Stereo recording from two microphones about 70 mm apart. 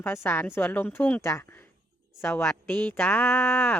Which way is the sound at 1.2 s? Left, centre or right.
Left.